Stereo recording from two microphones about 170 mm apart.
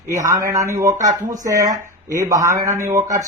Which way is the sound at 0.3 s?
15° right (ahead or behind).